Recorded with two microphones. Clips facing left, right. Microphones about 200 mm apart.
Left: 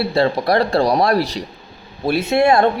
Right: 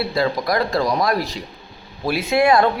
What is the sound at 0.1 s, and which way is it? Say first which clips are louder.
Speech: left 4 dB; 30° left (ahead or behind).